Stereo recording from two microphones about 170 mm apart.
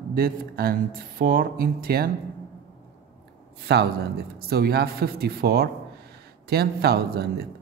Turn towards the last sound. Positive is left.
turn(degrees=-70)  # may be behind; listen again after turning